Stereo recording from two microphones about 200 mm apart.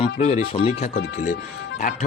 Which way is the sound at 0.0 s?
35° left (ahead or behind).